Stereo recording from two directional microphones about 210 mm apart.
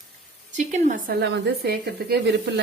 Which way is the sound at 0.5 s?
35° right (ahead or behind).